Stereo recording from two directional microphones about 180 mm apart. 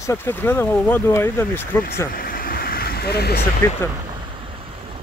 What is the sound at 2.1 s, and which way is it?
Waves, 55° left (ahead or behind).